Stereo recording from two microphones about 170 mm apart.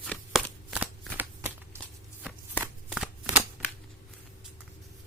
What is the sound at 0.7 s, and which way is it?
Shuffling cards, 10° right (ahead or behind).